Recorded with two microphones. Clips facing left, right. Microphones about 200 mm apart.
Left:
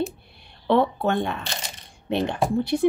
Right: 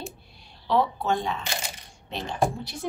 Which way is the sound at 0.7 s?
60° left (ahead or behind).